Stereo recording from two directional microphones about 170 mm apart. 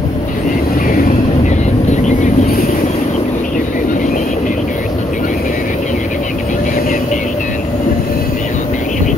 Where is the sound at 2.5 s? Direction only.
60° left (ahead or behind).